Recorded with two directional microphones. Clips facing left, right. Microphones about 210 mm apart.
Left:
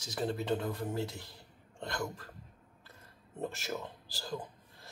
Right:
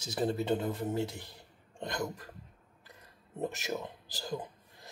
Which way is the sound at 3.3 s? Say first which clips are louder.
Right 3 dB; 20° right (ahead or behind).